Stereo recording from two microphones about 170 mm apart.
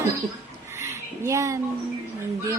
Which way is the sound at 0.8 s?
15° right (ahead or behind).